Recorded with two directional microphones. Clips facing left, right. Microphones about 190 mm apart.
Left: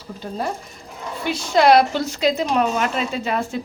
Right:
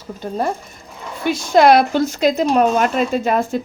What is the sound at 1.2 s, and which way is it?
A woman's voice, 50° right (ahead or behind).